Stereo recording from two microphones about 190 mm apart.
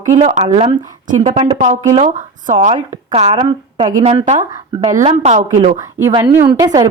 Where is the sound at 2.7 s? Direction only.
30° right (ahead or behind).